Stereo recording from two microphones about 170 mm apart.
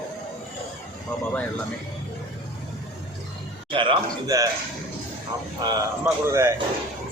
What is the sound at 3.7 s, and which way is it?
Speech, 30° right (ahead or behind).